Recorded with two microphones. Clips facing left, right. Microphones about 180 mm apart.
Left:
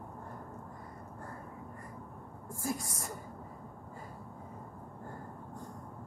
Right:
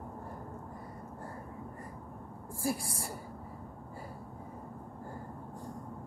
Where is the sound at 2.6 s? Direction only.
30° right (ahead or behind).